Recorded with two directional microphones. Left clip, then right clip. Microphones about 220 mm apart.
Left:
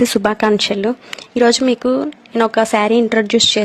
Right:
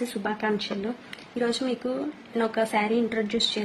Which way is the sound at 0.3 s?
45° left (ahead or behind).